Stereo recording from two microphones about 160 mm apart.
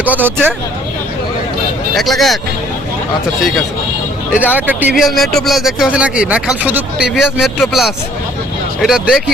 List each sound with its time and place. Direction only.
0.0 s speech: 10° right (ahead or behind)
2.0 s speech: centre (ahead or behind)
4.4 s speech: 10° right (ahead or behind)